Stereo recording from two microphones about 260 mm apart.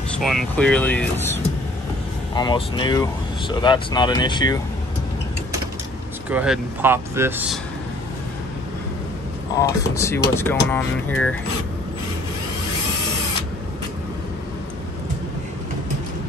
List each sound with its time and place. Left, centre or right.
0.1 s speech: centre
2.3 s speech: centre
6.3 s speech: centre
9.6 s speech: centre